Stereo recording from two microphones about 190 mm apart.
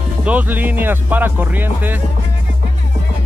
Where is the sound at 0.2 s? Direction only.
5° right (ahead or behind).